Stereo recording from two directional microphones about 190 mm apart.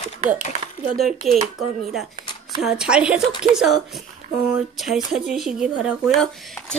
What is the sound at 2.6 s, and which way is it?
Speech, 5° right (ahead or behind).